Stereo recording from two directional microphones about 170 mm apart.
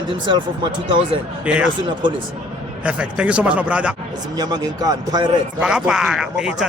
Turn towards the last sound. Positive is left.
turn(degrees=-5)  # may be behind; listen again after turning